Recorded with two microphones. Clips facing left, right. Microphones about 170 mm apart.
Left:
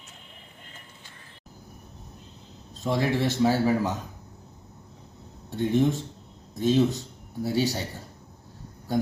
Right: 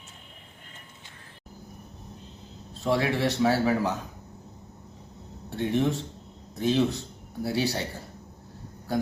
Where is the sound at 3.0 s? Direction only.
Centre (ahead or behind).